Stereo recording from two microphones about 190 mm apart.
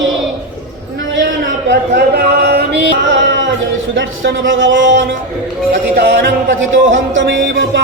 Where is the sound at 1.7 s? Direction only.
55° right (ahead or behind).